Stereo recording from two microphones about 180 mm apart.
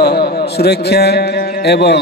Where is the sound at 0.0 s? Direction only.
60° left (ahead or behind).